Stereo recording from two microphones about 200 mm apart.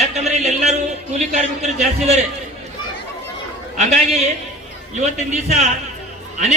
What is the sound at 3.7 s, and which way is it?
A man's voice, 35° right (ahead or behind).